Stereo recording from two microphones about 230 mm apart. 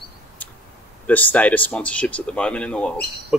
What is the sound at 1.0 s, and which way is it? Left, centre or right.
Speech, centre.